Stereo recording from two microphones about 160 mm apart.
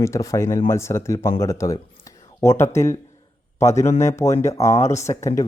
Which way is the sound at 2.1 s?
20° left (ahead or behind).